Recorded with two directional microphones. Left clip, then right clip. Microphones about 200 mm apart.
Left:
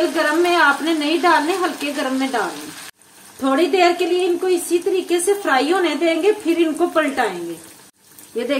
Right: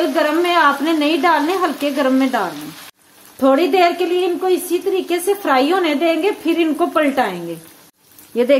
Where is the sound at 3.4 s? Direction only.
50° right (ahead or behind).